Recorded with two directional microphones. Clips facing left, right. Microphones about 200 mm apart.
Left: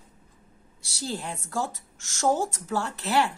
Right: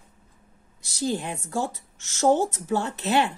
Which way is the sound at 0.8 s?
15° right (ahead or behind).